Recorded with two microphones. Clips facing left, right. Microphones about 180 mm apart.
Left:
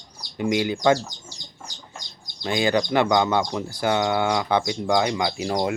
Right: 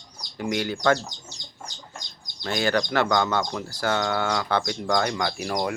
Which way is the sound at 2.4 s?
15° left (ahead or behind).